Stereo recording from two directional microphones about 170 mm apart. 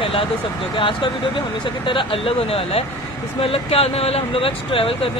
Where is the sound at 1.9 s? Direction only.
30° left (ahead or behind).